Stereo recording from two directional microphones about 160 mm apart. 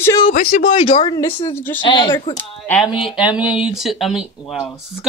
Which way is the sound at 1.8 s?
30° left (ahead or behind).